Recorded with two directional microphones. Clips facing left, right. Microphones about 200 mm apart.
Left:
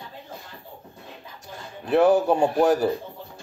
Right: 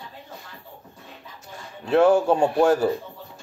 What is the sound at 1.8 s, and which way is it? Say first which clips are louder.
A child's voice: right 1 dB; 15° left (ahead or behind).